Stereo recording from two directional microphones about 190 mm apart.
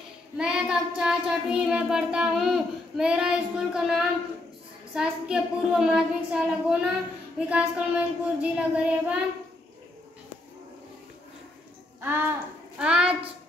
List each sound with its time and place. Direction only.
0.4 s child singing: 5° right (ahead or behind)
12.0 s speech: 10° right (ahead or behind)
12.7 s child singing: 5° right (ahead or behind)